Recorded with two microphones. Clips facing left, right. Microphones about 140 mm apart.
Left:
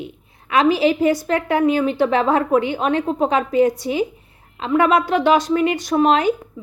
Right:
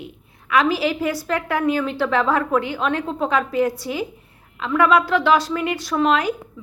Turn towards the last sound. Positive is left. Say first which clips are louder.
# left 3 dB
turn(degrees=25)  # may be behind; listen again after turning